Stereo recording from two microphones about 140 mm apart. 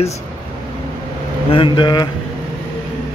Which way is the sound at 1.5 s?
35° left (ahead or behind).